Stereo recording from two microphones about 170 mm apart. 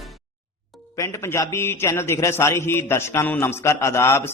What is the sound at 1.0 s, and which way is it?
A man's voice, 15° left (ahead or behind).